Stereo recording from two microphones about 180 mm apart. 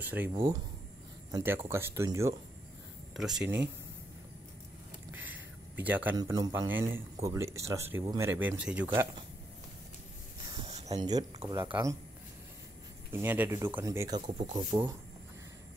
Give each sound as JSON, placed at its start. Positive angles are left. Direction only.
{"t": 0.0, "sound": "speech", "side_deg": -10}
{"t": 0.3, "sound": "speech", "side_deg": -20}
{"t": 3.2, "sound": "speech", "side_deg": -5}
{"t": 5.1, "sound": "a sound", "side_deg": -10}
{"t": 6.1, "sound": "speech", "side_deg": -20}
{"t": 10.9, "sound": "speech", "side_deg": -20}
{"t": 13.1, "sound": "speech", "side_deg": -10}